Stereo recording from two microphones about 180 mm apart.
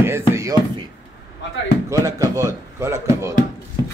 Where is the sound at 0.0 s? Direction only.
15° right (ahead or behind).